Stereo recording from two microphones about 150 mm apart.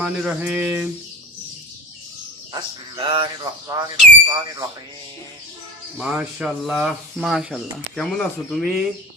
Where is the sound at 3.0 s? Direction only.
35° right (ahead or behind).